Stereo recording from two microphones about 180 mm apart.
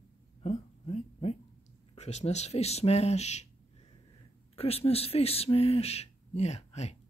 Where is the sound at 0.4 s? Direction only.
35° left (ahead or behind).